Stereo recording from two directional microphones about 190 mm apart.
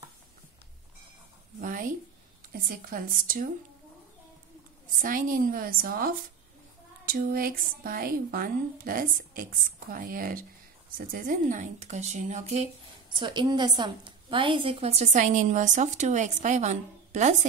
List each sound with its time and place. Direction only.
1.6 s a sound: 45° right (ahead or behind)
2.5 s speech: 50° right (ahead or behind)
5.0 s a woman's voice: 45° right (ahead or behind)
13.1 s a woman's voice: 25° right (ahead or behind)